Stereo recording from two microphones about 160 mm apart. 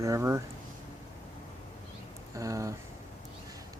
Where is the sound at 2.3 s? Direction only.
20° right (ahead or behind).